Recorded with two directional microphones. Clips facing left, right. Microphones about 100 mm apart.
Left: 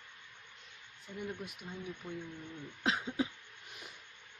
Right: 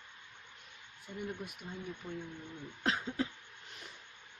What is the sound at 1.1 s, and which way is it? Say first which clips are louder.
Speech: right 1 dB; 15° right (ahead or behind).